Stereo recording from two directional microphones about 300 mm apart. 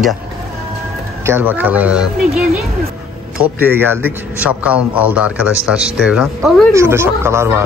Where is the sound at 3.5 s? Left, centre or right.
Centre.